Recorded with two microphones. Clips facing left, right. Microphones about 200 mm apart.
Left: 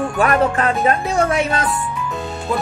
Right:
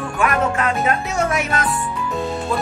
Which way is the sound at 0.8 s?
30° left (ahead or behind).